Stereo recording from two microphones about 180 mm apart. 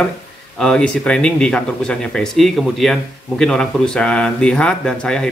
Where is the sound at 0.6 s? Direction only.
5° left (ahead or behind).